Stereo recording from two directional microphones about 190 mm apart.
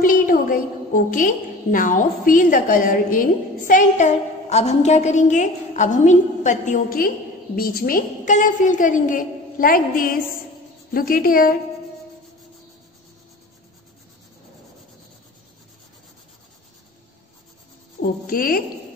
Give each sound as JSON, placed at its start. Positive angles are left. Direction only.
{"t": 0.0, "sound": "a woman's voice", "side_deg": 45}
{"t": 18.2, "sound": "a woman's voice", "side_deg": 50}